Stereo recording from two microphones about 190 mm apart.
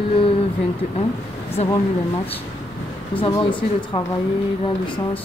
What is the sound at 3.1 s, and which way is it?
Speech, 25° left (ahead or behind).